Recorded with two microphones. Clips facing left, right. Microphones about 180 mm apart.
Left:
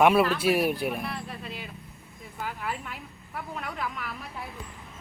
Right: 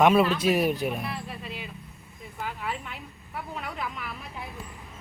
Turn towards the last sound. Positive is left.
turn(degrees=0)  # may be behind; listen again after turning